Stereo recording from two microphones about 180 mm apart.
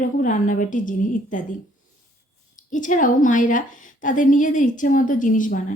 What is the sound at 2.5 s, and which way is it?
Speech, 45° left (ahead or behind).